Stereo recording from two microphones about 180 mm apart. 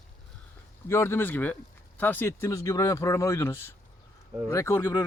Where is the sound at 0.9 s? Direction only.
15° left (ahead or behind).